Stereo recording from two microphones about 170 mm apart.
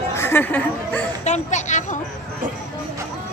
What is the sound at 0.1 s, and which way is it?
Speech, 15° left (ahead or behind).